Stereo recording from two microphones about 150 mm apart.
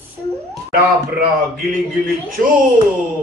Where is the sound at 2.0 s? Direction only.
65° right (ahead or behind).